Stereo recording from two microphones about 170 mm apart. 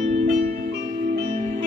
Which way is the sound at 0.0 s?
40° right (ahead or behind).